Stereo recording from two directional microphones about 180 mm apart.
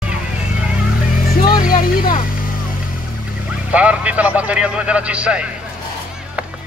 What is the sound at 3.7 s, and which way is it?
A man's voice, 5° right (ahead or behind).